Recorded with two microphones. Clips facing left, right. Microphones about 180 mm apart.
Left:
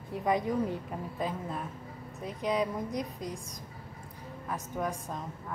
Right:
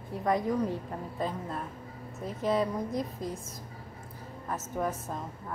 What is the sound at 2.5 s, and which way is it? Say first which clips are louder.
Speech: right 2 dB; 15° left (ahead or behind).